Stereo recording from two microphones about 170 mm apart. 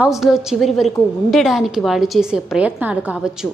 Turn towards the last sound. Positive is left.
turn(degrees=-5)  # may be behind; listen again after turning